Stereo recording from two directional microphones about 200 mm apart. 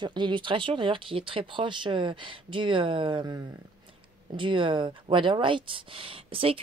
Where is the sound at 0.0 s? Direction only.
25° right (ahead or behind).